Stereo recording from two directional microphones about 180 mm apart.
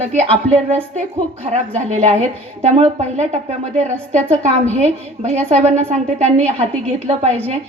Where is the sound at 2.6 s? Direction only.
35° right (ahead or behind).